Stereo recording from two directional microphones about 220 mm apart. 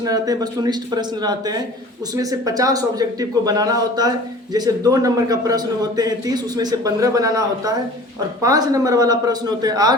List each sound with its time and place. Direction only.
0.0 s a man's voice: 15° right (ahead or behind)